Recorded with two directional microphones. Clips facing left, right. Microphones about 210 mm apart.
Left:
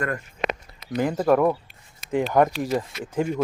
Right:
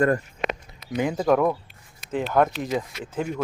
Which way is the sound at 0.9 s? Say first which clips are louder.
Left 1 dB; centre (ahead or behind).